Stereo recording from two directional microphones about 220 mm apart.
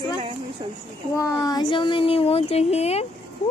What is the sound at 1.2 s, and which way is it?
Speech, 15° left (ahead or behind).